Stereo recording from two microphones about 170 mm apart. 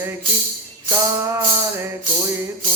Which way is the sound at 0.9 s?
15° right (ahead or behind).